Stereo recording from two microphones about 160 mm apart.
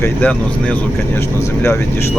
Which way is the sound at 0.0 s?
10° left (ahead or behind).